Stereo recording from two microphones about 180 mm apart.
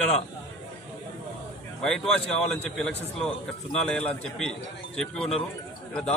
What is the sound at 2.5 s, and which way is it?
A man's voice, centre (ahead or behind).